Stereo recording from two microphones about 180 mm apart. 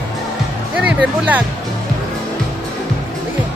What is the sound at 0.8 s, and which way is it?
Speech, 5° right (ahead or behind).